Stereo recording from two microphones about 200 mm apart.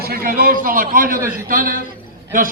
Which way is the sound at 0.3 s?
45° right (ahead or behind).